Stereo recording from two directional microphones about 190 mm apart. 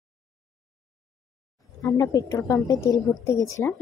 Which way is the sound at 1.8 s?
15° left (ahead or behind).